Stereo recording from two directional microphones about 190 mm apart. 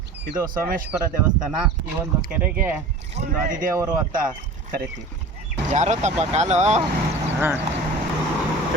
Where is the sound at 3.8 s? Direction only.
20° right (ahead or behind).